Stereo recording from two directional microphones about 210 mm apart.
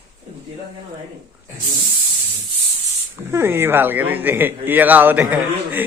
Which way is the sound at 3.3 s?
10° right (ahead or behind).